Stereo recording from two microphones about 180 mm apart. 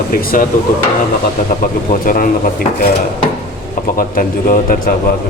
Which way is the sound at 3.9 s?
50° left (ahead or behind).